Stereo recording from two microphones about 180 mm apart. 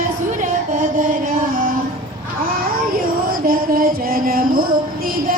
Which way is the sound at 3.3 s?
55° right (ahead or behind).